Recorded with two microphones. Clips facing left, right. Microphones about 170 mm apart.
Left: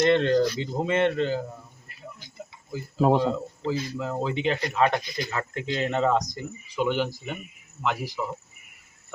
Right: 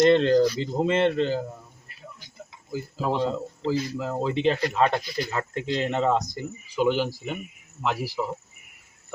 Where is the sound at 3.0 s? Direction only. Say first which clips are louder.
Left 5 dB; 45° left (ahead or behind).